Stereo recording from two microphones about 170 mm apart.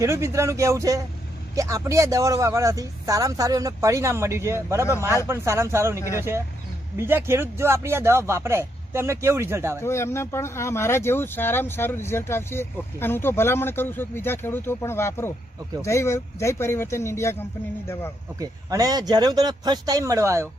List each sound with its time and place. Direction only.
0.0 s speech: 15° right (ahead or behind)
9.8 s speech: 15° left (ahead or behind)
18.3 s speech: 20° right (ahead or behind)